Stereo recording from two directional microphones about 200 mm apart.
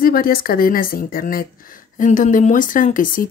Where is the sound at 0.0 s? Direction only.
45° left (ahead or behind).